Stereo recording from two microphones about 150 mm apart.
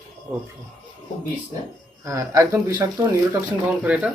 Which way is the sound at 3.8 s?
5° right (ahead or behind).